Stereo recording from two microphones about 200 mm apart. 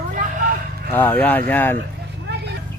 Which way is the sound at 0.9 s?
10° left (ahead or behind).